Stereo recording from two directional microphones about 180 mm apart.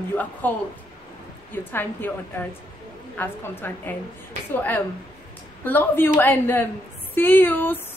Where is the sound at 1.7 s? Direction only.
10° left (ahead or behind).